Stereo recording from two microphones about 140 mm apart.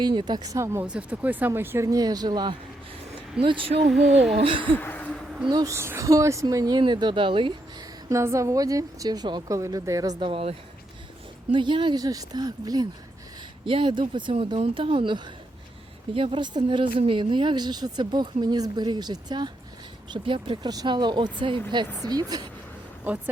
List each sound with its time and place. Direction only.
0.0 s a woman's voice: 35° right (ahead or behind)
4.0 s speech: 50° right (ahead or behind)
4.4 s speech: 40° right (ahead or behind)
4.7 s a sound: 10° left (ahead or behind)
5.5 s a woman's voice: 25° right (ahead or behind)
8.1 s a woman's voice: 20° right (ahead or behind)
10.2 s speech: 40° right (ahead or behind)
11.5 s a woman's voice: 35° right (ahead or behind)